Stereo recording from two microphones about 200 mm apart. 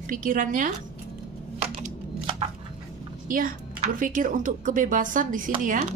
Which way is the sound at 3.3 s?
40° right (ahead or behind).